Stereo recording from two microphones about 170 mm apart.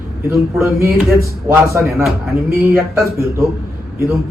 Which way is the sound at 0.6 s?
15° right (ahead or behind).